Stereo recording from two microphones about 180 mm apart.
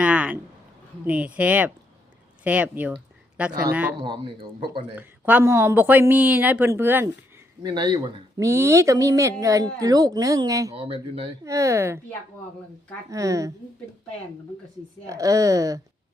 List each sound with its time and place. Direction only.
0.0 s a sound: 5° right (ahead or behind)
1.0 s speech: 10° right (ahead or behind)
4.0 s speech: 25° right (ahead or behind)
4.9 s speech: 10° right (ahead or behind)
7.6 s speech: 25° right (ahead or behind)
8.4 s speech: 15° right (ahead or behind)
10.8 s speech: 30° right (ahead or behind)
11.4 s speech: 15° right (ahead or behind)
13.1 s speech: 20° right (ahead or behind)
15.0 s speech: 20° right (ahead or behind)